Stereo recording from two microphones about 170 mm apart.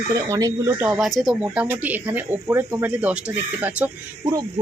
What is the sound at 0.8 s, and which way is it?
Speech, 5° right (ahead or behind).